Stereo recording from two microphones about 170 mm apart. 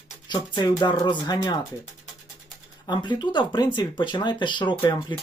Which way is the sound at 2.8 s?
25° left (ahead or behind).